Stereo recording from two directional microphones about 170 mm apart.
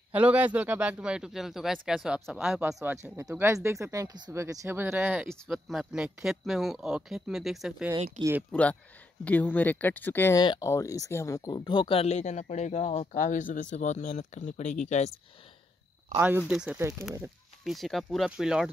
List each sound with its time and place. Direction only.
0.1 s a man's voice: 10° right (ahead or behind)
3.2 s a man's voice: 15° right (ahead or behind)
8.2 s speech: 15° right (ahead or behind)
8.5 s speech: 5° left (ahead or behind); by 15.1 s 40° left (ahead or behind)
16.2 s a man's voice: 10° right (ahead or behind)